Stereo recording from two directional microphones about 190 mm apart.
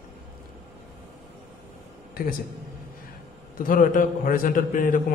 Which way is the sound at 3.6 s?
45° left (ahead or behind).